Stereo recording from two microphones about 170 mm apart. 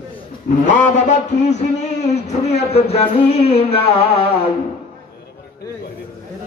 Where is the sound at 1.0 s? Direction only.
45° left (ahead or behind).